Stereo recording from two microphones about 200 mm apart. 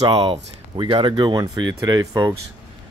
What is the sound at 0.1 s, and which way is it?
Speech, 25° right (ahead or behind).